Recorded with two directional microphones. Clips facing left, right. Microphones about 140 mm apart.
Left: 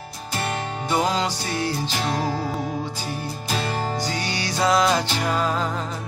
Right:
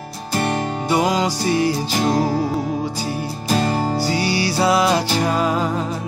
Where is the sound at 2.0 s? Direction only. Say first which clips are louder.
Right 7 dB; 35° right (ahead or behind).